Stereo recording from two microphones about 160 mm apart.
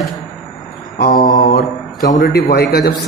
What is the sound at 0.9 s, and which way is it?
Mantra, 65° left (ahead or behind).